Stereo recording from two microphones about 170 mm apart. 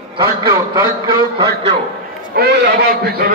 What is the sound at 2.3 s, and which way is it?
A man's voice, 80° right.